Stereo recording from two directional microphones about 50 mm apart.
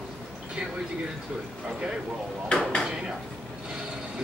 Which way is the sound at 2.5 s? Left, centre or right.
Centre.